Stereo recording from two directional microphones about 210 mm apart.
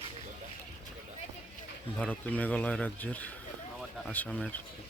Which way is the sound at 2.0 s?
5° left (ahead or behind).